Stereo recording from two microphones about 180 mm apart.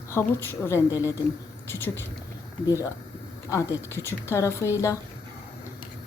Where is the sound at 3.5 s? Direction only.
15° left (ahead or behind).